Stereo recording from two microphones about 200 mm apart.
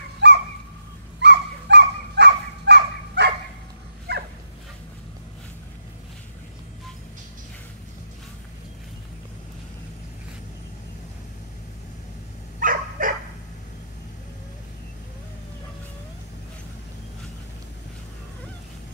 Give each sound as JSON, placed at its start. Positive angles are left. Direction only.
{"t": 0.2, "sound": "dog", "side_deg": -60}
{"t": 12.5, "sound": "dog", "side_deg": -45}